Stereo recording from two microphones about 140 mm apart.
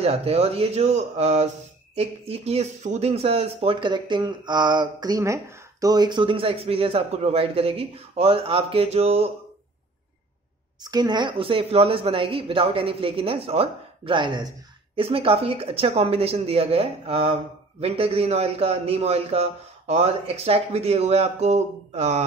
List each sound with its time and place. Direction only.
0.0 s speech: 45° right (ahead or behind)
10.8 s speech: 30° right (ahead or behind); by 22.2 s 50° right (ahead or behind)